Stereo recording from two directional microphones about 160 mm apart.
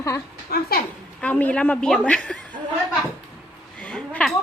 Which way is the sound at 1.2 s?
10° left (ahead or behind).